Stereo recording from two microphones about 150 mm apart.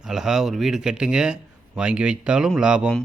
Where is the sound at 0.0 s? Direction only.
5° right (ahead or behind).